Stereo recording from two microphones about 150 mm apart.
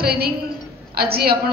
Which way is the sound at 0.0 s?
90° right.